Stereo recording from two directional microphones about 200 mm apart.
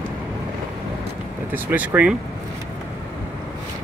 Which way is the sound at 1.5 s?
10° right (ahead or behind).